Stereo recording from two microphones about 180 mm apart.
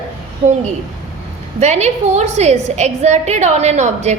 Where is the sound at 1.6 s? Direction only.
40° right (ahead or behind).